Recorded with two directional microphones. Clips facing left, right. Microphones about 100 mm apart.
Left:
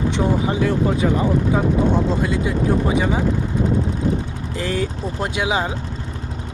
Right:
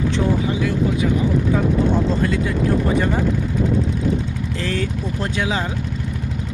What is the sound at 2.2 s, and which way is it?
Speech, 20° left (ahead or behind).